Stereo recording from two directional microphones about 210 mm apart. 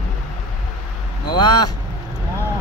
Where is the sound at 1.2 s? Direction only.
20° left (ahead or behind).